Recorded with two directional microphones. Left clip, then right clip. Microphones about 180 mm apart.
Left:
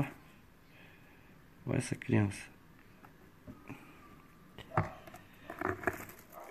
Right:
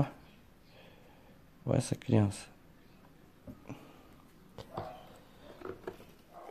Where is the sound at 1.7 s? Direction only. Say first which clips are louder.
Right 3 dB; 15° right (ahead or behind).